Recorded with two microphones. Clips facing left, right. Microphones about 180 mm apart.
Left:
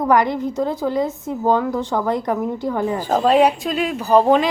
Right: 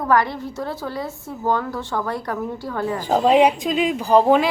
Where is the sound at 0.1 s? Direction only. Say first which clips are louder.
Left 2 dB; 20° left (ahead or behind).